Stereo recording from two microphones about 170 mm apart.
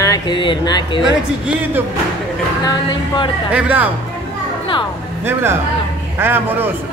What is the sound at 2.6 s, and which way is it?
Speech, 20° left (ahead or behind).